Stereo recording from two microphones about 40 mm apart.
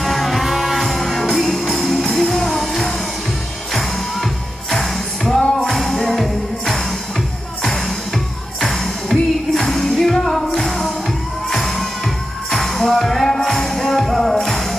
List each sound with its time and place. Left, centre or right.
0.0 s music: centre
8.5 s music: centre